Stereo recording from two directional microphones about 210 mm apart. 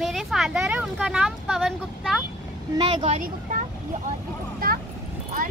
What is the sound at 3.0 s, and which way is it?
Speech, 40° right (ahead or behind).